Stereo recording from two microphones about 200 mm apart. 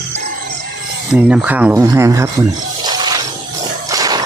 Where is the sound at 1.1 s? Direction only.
5° right (ahead or behind).